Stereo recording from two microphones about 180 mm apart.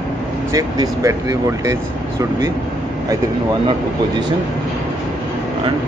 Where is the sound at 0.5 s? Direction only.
20° right (ahead or behind).